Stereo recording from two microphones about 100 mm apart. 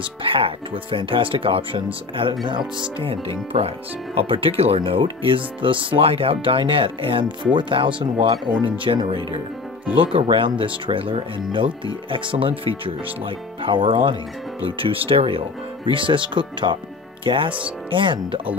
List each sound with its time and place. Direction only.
0.0 s speech: 60° right (ahead or behind)